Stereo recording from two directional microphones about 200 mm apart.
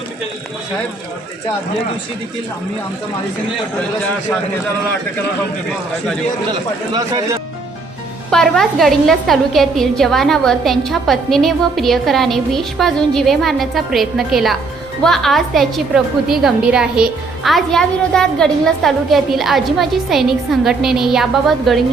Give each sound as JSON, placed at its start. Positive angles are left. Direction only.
{"t": 6.9, "sound": "speech", "side_deg": -15}
{"t": 8.3, "sound": "a woman's voice", "side_deg": 0}